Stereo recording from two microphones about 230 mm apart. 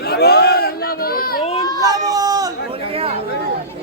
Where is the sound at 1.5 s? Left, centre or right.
Centre.